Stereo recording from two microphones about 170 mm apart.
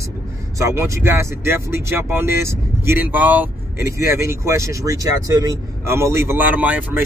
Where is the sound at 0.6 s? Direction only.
15° right (ahead or behind).